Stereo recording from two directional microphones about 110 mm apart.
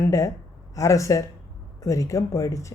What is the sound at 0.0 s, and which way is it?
Speech, 30° left (ahead or behind).